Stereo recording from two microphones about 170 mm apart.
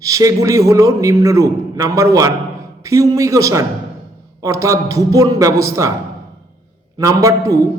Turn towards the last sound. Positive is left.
turn(degrees=-20)  # may be behind; listen again after turning